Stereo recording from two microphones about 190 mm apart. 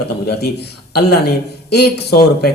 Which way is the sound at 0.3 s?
60° left (ahead or behind).